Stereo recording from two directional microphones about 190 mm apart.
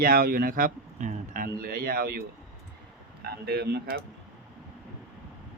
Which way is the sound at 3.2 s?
55° right (ahead or behind).